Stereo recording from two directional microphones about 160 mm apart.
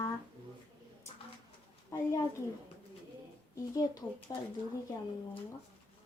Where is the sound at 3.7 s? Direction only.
25° left (ahead or behind).